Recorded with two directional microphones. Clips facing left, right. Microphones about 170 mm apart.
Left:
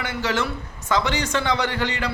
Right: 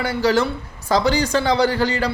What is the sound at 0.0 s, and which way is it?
Speech, 35° right (ahead or behind).